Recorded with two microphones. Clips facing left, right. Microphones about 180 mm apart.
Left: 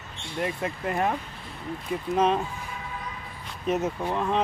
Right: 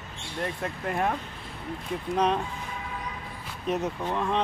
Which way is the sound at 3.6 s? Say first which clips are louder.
Left 2 dB; centre (ahead or behind).